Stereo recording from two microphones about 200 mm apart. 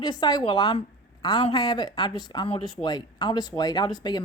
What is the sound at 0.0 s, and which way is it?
A woman's voice, 20° left (ahead or behind).